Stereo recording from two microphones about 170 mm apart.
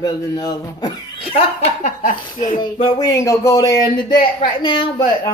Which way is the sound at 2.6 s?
25° left (ahead or behind).